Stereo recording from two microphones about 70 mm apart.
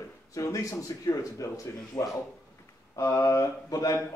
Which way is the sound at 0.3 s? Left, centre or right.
Left.